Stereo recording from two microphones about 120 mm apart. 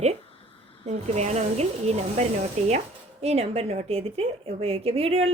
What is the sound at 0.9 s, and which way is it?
A woman's voice, 65° right (ahead or behind).